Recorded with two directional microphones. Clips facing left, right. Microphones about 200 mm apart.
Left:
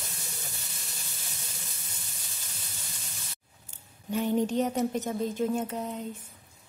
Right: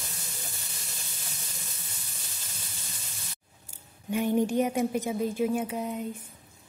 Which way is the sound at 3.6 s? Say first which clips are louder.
Right 2 dB; 10° right (ahead or behind).